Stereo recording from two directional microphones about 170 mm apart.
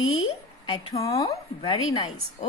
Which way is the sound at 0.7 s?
20° left (ahead or behind).